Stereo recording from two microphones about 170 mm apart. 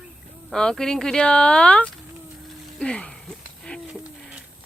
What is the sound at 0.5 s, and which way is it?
Speech, 5° left (ahead or behind).